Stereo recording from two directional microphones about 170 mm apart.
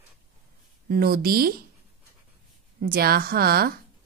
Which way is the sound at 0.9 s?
65° right (ahead or behind).